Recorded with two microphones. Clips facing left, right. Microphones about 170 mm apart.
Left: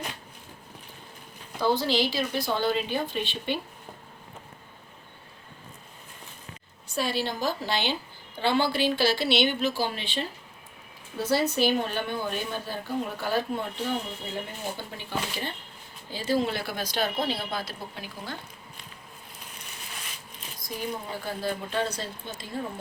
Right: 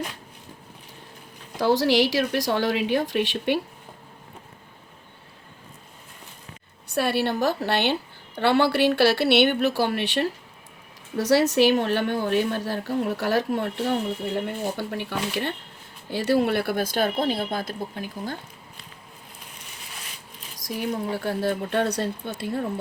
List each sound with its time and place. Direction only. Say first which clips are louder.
1.5 s a woman's voice: right 5 dB; 90° right
6.8 s speech: right 5 dB; 65° right (ahead or behind)
11.2 s a woman's voice: right 6 dB; 90° right
14.8 s a woman's voice: right 5 dB; 70° right (ahead or behind); by 18.3 s 50° right (ahead or behind)
20.6 s speech: right 6 dB; 80° right
21.2 s speech: right 5 dB; 65° right (ahead or behind)